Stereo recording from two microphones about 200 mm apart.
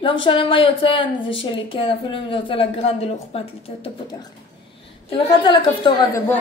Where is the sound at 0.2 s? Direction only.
25° left (ahead or behind).